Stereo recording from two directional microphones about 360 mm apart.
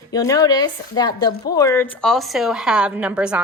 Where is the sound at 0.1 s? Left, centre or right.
Centre.